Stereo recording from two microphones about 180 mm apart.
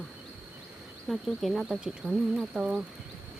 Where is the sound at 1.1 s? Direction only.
Centre (ahead or behind).